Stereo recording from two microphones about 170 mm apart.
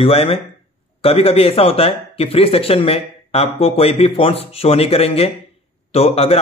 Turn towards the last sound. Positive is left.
turn(degrees=35)  # may be behind; listen again after turning